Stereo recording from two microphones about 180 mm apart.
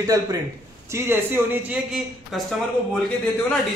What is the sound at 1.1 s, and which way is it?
Speech, 10° right (ahead or behind).